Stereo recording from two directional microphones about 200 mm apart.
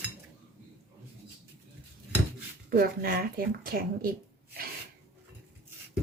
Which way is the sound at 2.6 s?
45° right (ahead or behind).